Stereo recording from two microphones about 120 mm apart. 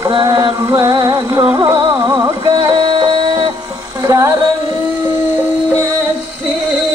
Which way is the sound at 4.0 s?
25° right (ahead or behind).